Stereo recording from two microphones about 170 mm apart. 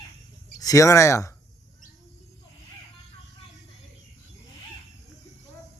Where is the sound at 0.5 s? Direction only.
20° left (ahead or behind).